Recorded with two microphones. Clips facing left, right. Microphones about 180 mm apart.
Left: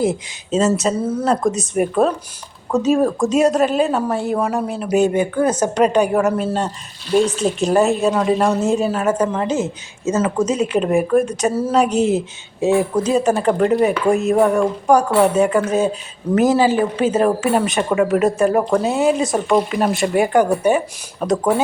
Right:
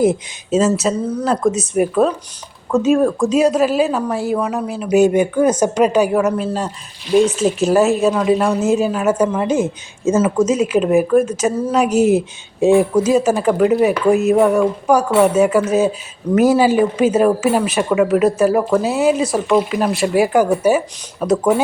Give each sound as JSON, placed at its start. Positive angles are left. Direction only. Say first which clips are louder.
{"t": 0.0, "sound": "speech", "louder": "right 4 dB", "side_deg": -15}
{"t": 0.6, "sound": "speech", "louder": "left 1 dB", "side_deg": 0}
{"t": 4.9, "sound": "speech", "louder": "right 3 dB", "side_deg": -10}
{"t": 10.4, "sound": "speech", "louder": "right 3 dB", "side_deg": 35}
{"t": 10.7, "sound": "speech", "louder": "right 2 dB", "side_deg": -5}
{"t": 12.5, "sound": "speech", "louder": "right 4 dB", "side_deg": -20}
{"t": 13.2, "sound": "speech", "louder": "right 1 dB", "side_deg": -5}